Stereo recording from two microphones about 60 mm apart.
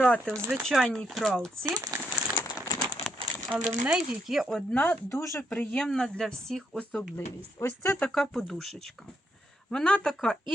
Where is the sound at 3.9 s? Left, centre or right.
Centre.